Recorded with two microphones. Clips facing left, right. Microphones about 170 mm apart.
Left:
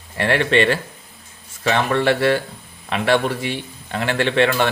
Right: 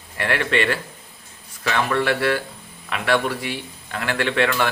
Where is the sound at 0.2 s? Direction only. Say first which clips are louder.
Left 5 dB; 30° left (ahead or behind).